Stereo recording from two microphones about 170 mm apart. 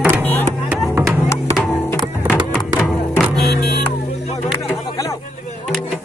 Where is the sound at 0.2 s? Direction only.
10° left (ahead or behind).